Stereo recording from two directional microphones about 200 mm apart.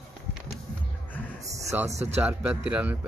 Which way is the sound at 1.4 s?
10° right (ahead or behind).